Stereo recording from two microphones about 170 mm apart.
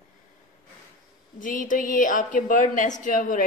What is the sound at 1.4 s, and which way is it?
A woman's voice, 50° left (ahead or behind).